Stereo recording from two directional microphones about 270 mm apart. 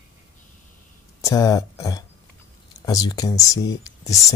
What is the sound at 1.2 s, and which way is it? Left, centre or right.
Speech, centre.